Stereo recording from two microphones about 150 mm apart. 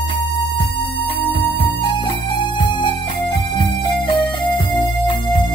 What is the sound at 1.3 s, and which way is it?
Music, 35° left (ahead or behind).